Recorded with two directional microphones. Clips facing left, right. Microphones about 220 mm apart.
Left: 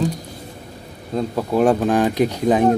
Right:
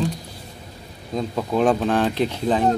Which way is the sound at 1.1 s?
5° left (ahead or behind).